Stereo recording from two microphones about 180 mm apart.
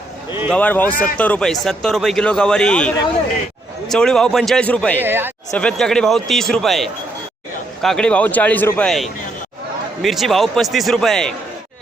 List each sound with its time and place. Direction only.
0.5 s a man's voice: 10° left (ahead or behind)
0.9 s speech: 50° left (ahead or behind)
1.2 s a man's voice: 5° left (ahead or behind)
4.9 s speech: 10° right (ahead or behind)
5.5 s a man's voice: 5° left (ahead or behind)